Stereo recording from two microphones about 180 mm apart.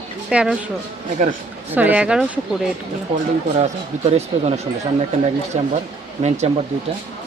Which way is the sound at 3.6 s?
35° right (ahead or behind).